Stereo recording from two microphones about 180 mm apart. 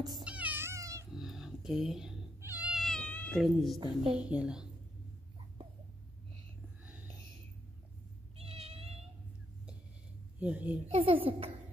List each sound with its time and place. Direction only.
0.2 s cat: 5° right (ahead or behind)
1.1 s cat: centre (ahead or behind)
3.8 s a child's voice: 30° right (ahead or behind)
4.2 s a woman's voice: 5° right (ahead or behind)
8.4 s cat: 35° right (ahead or behind)
10.4 s a woman's voice: 10° right (ahead or behind)
10.9 s a child's voice: 30° right (ahead or behind)